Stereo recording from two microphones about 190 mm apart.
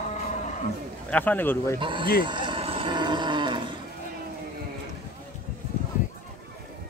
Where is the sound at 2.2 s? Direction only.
25° right (ahead or behind).